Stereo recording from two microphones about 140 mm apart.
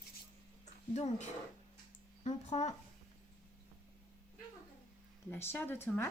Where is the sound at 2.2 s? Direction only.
50° left (ahead or behind).